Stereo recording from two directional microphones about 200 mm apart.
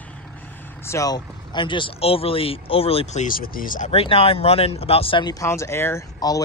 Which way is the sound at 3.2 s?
45° left (ahead or behind).